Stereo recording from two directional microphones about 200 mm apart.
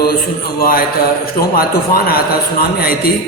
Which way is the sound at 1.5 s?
50° left (ahead or behind).